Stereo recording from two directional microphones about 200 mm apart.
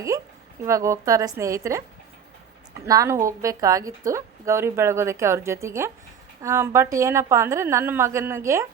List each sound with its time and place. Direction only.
0.6 s a woman's voice: 15° right (ahead or behind)
2.8 s a woman's voice: 15° right (ahead or behind)